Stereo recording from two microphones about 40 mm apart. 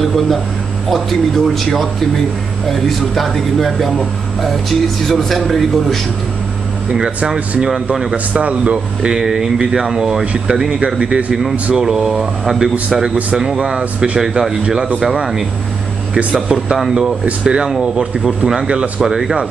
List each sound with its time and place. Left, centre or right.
0.0 s speech: centre
7.7 s speech: centre
8.3 s speech: right
9.2 s speech: centre
11.7 s speech: centre
16.3 s speech: centre
18.7 s speech: right
19.0 s speech: centre